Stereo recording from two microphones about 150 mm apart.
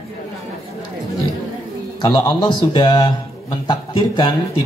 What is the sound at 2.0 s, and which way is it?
A man's voice, 30° left (ahead or behind).